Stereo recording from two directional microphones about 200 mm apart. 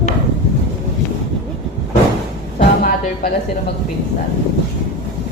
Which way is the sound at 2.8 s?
50° left (ahead or behind).